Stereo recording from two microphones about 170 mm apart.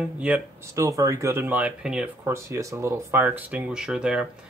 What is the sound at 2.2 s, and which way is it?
Speech, 15° right (ahead or behind).